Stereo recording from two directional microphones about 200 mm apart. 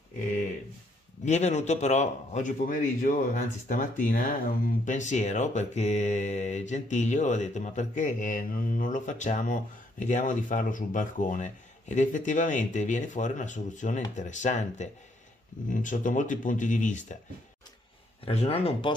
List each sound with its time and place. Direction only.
1.2 s speech: 35° left (ahead or behind)
18.2 s speech: 30° left (ahead or behind)